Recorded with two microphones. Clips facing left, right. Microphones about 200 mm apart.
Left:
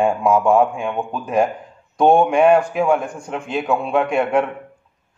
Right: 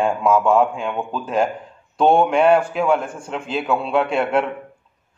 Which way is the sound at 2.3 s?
10° left (ahead or behind).